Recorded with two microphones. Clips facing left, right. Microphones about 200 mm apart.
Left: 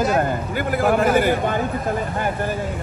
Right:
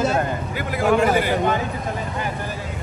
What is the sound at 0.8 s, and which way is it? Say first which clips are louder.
Speech: even; 50° left (ahead or behind).